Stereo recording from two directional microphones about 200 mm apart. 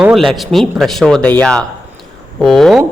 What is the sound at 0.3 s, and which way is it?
A man's voice, centre (ahead or behind).